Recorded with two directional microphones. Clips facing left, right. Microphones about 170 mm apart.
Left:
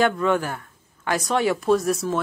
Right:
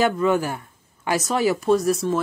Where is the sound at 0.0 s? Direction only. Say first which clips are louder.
Right 1 dB; 5° right (ahead or behind).